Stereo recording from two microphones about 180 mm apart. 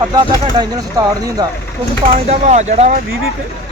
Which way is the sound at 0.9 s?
20° right (ahead or behind).